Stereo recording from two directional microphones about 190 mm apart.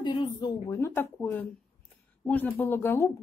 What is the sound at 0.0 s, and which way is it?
Speech, 25° left (ahead or behind).